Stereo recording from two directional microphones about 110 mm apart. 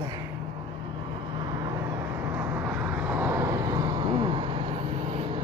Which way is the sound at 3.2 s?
25° right (ahead or behind).